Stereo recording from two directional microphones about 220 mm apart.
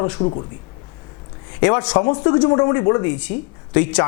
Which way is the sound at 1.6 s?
20° left (ahead or behind).